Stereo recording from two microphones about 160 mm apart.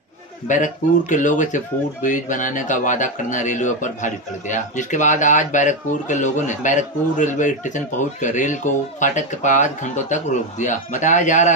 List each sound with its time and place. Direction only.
0.5 s speech: 55° left (ahead or behind)